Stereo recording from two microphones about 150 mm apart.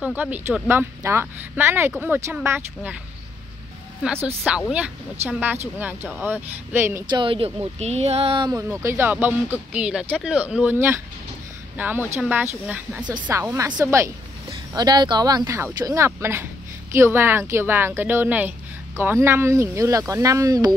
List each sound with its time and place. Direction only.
0.0 s speech: 10° right (ahead or behind)
4.4 s speech: 5° right (ahead or behind)
7.1 s speech: 35° right (ahead or behind)
8.5 s a woman's voice: 20° right (ahead or behind)
14.7 s speech: 25° right (ahead or behind)